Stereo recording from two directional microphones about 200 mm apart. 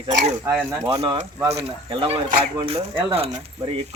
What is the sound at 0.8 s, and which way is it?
Speech, 25° right (ahead or behind).